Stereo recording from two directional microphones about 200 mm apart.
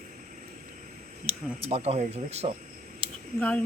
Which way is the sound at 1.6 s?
30° right (ahead or behind).